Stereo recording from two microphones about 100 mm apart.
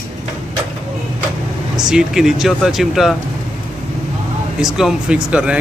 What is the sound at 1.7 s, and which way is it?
Speech, 5° right (ahead or behind).